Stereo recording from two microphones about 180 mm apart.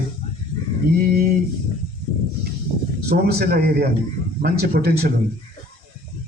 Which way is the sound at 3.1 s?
60° right (ahead or behind).